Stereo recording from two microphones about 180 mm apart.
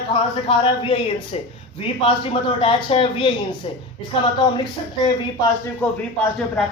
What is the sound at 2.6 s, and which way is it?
Speech, 30° left (ahead or behind).